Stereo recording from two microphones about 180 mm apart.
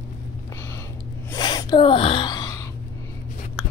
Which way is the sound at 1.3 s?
25° left (ahead or behind).